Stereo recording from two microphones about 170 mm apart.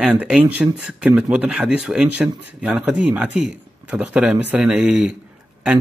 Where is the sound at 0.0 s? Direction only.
5° right (ahead or behind).